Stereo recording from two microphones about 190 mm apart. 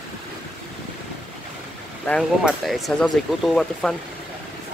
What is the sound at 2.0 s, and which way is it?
Speech, centre (ahead or behind).